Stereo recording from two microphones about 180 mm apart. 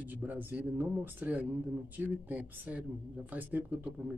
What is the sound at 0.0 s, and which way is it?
Speech, 10° right (ahead or behind).